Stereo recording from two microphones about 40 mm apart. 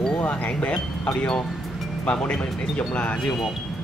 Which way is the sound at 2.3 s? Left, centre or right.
Left.